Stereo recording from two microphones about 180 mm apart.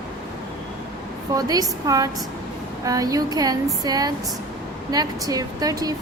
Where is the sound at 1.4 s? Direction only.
20° right (ahead or behind).